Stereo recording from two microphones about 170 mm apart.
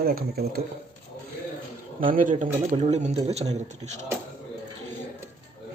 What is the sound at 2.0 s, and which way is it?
A man's voice, 50° right (ahead or behind).